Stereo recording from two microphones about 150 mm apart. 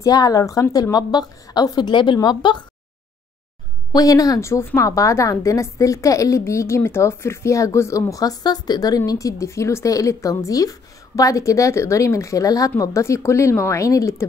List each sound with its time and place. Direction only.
0.0 s a woman's voice: 25° left (ahead or behind)
3.9 s a woman's voice: 25° left (ahead or behind)